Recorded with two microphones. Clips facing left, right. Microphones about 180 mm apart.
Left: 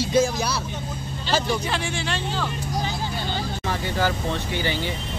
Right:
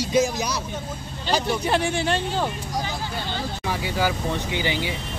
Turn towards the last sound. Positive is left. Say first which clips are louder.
# even
turn(degrees=-15)  # may be behind; listen again after turning